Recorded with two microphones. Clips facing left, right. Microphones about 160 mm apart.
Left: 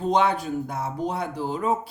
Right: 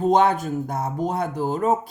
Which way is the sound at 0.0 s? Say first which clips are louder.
Right 4 dB; 45° right (ahead or behind).